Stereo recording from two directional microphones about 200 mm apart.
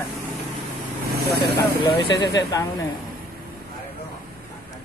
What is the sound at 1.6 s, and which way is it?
Speech, 20° left (ahead or behind).